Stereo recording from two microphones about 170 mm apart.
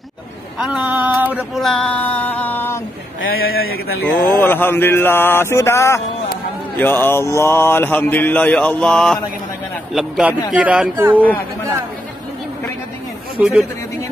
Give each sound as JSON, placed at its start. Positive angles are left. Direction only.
{"t": 0.7, "sound": "a sound", "side_deg": -5}
{"t": 1.6, "sound": "female singing", "side_deg": 5}
{"t": 3.3, "sound": "a man's voice", "side_deg": 60}
{"t": 4.0, "sound": "mantra", "side_deg": 10}
{"t": 9.9, "sound": "a man's voice", "side_deg": 0}
{"t": 10.5, "sound": "a sound", "side_deg": -5}
{"t": 13.4, "sound": "a man's voice", "side_deg": -5}